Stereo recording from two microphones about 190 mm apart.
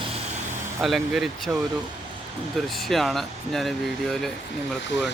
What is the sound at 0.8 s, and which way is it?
Speech, centre (ahead or behind).